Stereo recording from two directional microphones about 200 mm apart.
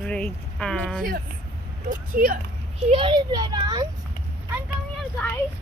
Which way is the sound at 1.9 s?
45° right (ahead or behind).